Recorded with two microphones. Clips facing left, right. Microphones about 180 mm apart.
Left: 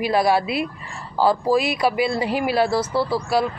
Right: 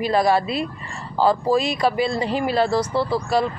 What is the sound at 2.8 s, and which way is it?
Speech, 20° right (ahead or behind).